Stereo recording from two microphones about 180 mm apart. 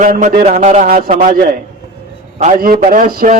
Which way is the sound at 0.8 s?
50° right (ahead or behind).